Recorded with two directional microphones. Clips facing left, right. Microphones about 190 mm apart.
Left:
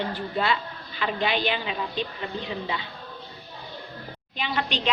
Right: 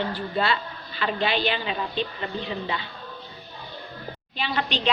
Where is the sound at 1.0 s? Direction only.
15° left (ahead or behind).